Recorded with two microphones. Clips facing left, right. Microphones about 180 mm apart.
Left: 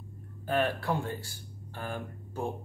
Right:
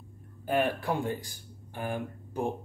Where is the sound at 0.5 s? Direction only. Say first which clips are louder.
Right 1 dB; 15° right (ahead or behind).